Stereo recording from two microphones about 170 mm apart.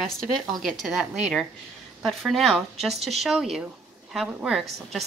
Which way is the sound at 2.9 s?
40° right (ahead or behind).